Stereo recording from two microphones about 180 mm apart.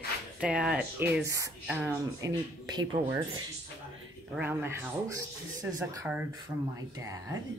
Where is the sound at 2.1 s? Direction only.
20° right (ahead or behind).